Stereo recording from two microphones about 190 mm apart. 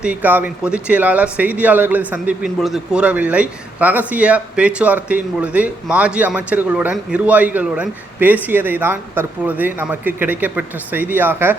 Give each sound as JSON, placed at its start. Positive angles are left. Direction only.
{"t": 0.0, "sound": "a man's voice", "side_deg": -10}